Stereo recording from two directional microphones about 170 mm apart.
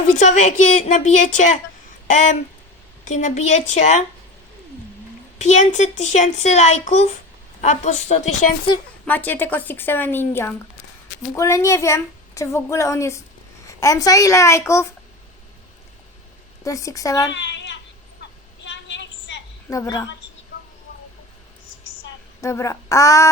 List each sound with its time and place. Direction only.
0.1 s a woman's voice: 45° left (ahead or behind)
5.4 s a woman's voice: 45° left (ahead or behind)
9.0 s a woman's voice: 10° left (ahead or behind)
16.6 s a woman's voice: 20° left (ahead or behind)
17.3 s a sound: 90° left
19.7 s a woman's voice: 20° left (ahead or behind)
22.4 s a woman's voice: 15° left (ahead or behind)